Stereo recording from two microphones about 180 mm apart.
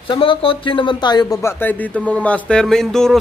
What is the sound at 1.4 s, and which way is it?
Speech, 10° left (ahead or behind).